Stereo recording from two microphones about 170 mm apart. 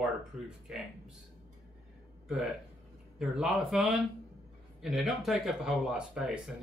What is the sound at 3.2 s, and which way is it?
Speech, 5° right (ahead or behind).